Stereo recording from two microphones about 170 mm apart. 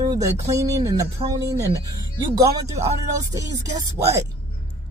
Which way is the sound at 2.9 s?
20° right (ahead or behind).